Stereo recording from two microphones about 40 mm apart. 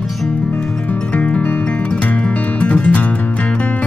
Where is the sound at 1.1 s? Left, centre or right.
Left.